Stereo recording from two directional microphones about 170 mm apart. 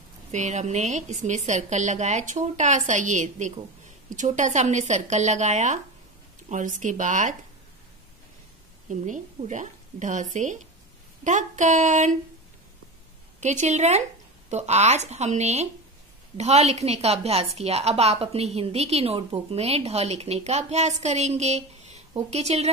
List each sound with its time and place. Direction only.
0.3 s a woman's voice: 45° right (ahead or behind)
9.0 s a woman's voice: 45° right (ahead or behind)
13.4 s a woman's voice: 45° right (ahead or behind)